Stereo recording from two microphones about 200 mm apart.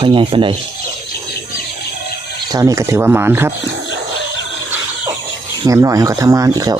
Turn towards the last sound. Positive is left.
turn(degrees=-20)  # may be behind; listen again after turning